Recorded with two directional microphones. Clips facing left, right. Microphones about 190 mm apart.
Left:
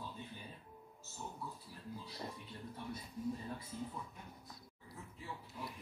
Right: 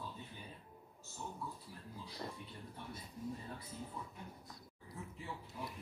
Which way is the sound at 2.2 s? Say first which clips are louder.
Right 1 dB; 15° left (ahead or behind).